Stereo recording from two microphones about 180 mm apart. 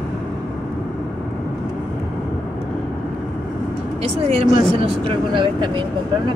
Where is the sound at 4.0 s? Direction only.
35° right (ahead or behind).